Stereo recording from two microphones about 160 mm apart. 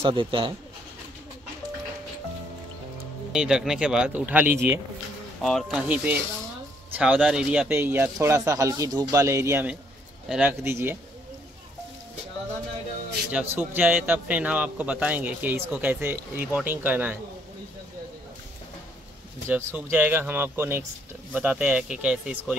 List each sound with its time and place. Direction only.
0.0 s speech: 30° right (ahead or behind)
3.3 s speech: 5° right (ahead or behind)
5.4 s a man's voice: centre (ahead or behind); by 9.8 s 15° right (ahead or behind)
10.2 s speech: 5° right (ahead or behind)
10.6 s a man's voice: 15° right (ahead or behind)
13.3 s a man's voice: 10° right (ahead or behind)
19.5 s a man's voice: 10° right (ahead or behind)